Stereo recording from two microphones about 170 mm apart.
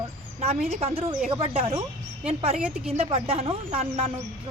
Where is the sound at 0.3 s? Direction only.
35° right (ahead or behind).